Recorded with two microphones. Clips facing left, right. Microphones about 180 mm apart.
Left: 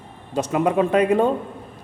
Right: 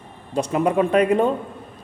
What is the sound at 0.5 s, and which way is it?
Speech, 20° left (ahead or behind).